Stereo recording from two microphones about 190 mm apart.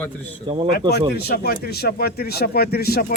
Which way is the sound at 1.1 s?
55° left (ahead or behind).